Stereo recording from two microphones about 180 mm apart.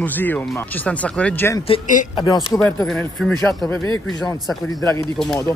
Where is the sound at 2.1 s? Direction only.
25° left (ahead or behind).